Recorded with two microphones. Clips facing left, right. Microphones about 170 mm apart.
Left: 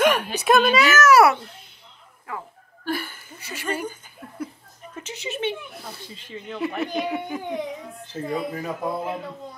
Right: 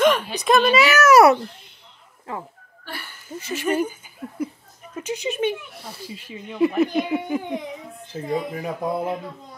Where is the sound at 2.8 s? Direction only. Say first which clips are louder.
Left 9 dB; 50° left (ahead or behind).